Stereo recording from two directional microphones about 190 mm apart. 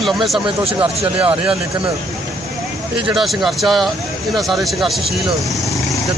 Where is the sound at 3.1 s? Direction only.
Centre (ahead or behind).